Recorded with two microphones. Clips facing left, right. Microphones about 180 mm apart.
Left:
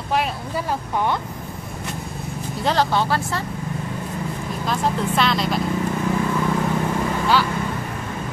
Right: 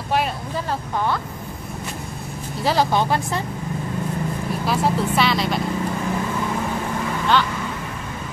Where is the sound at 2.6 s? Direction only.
15° right (ahead or behind).